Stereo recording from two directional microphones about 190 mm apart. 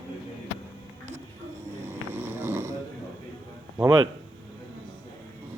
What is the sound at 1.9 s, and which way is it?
Snoring, 10° right (ahead or behind).